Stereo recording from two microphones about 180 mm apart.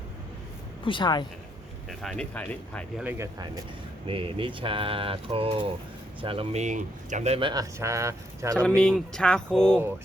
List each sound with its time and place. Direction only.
0.9 s a woman's voice: 25° left (ahead or behind)
1.9 s speech: centre (ahead or behind)
3.0 s speech: 10° right (ahead or behind)
3.3 s speech: 20° right (ahead or behind)
8.6 s speech: 5° left (ahead or behind)